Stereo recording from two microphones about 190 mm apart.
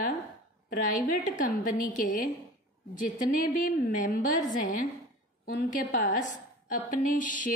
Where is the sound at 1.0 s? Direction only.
45° left (ahead or behind).